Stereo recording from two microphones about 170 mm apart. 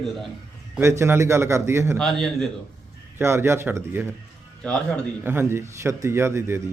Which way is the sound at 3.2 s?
15° right (ahead or behind).